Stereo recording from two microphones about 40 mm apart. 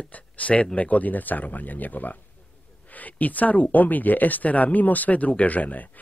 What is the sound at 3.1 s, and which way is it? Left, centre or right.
Speech, left.